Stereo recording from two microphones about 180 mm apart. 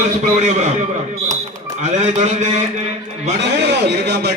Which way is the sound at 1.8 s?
40° right (ahead or behind).